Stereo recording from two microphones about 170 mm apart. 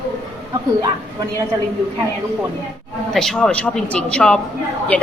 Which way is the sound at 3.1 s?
Centre (ahead or behind).